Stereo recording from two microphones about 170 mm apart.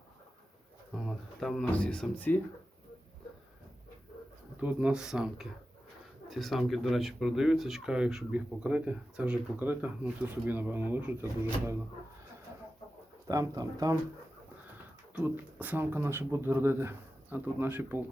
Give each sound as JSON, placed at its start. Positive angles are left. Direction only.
{"t": 1.0, "sound": "speech", "side_deg": 0}
{"t": 4.5, "sound": "speech", "side_deg": -5}
{"t": 13.2, "sound": "speech", "side_deg": -20}
{"t": 15.1, "sound": "speech", "side_deg": -10}